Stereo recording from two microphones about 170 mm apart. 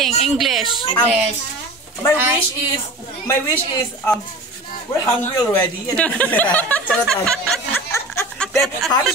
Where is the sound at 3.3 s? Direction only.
15° left (ahead or behind).